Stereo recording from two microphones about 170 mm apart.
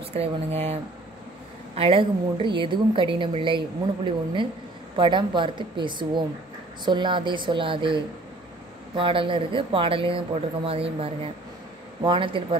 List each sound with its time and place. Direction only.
0.1 s speech: 40° right (ahead or behind)
1.8 s a woman's voice: 35° right (ahead or behind)